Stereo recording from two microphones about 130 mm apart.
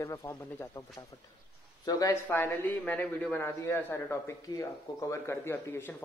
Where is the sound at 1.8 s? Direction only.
20° left (ahead or behind).